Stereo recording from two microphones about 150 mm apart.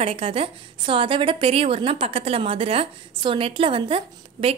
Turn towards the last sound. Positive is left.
turn(degrees=-40)  # may be behind; listen again after turning